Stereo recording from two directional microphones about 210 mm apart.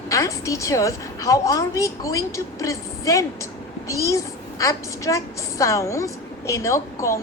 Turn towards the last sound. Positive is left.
turn(degrees=15)  # may be behind; listen again after turning